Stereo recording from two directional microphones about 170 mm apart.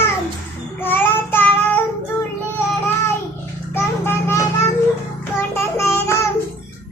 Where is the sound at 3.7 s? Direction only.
15° left (ahead or behind).